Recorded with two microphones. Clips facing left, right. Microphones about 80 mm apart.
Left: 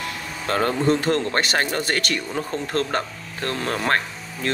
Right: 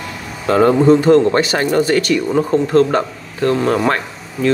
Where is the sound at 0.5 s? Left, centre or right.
Right.